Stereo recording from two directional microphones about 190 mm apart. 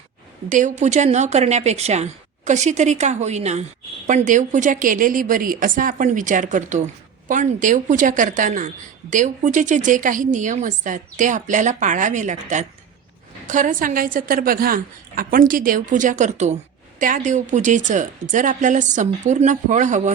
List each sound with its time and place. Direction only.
0.5 s a woman's voice: 40° right (ahead or behind)